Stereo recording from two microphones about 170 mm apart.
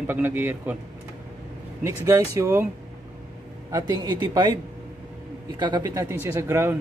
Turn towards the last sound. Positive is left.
turn(degrees=-15)  # may be behind; listen again after turning